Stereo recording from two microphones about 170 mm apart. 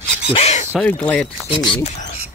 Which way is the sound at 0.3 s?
40° left (ahead or behind).